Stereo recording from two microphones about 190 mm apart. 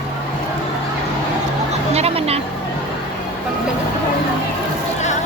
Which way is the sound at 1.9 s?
35° right (ahead or behind).